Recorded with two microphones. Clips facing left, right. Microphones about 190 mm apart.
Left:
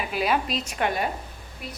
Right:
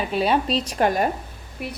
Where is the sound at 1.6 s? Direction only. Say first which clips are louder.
Right 7 dB; 60° right (ahead or behind).